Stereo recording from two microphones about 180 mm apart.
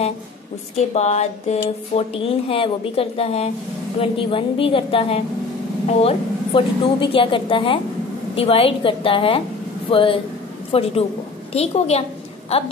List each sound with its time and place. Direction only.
0.9 s a woman's voice: 40° left (ahead or behind)